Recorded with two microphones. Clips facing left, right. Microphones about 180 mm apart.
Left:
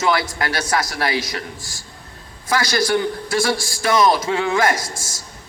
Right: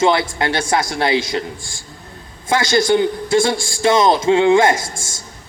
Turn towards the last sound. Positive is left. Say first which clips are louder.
# right 6 dB
turn(degrees=-25)  # may be behind; listen again after turning